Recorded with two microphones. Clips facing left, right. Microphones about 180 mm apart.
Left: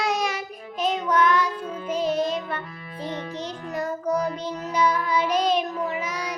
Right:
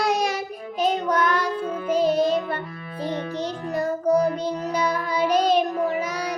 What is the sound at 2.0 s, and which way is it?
Music, 35° right (ahead or behind).